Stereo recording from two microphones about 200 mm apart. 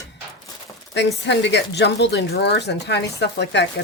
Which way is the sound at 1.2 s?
60° left (ahead or behind).